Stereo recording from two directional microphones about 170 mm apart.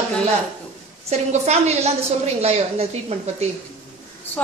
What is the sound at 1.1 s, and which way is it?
A woman's voice, 40° right (ahead or behind).